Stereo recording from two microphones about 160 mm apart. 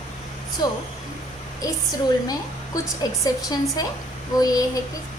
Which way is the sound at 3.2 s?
25° left (ahead or behind).